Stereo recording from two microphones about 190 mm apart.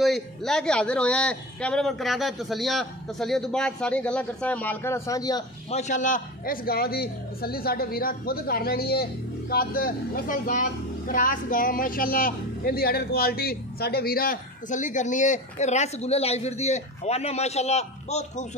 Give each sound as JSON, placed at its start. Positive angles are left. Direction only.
{"t": 0.0, "sound": "a man's voice", "side_deg": 0}
{"t": 5.7, "sound": "a man's voice", "side_deg": 35}